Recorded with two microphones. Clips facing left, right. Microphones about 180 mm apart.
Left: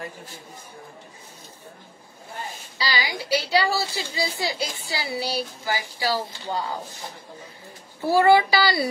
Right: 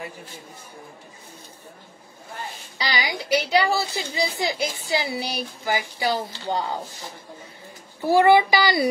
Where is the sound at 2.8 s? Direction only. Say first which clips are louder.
Right 1 dB; 20° right (ahead or behind).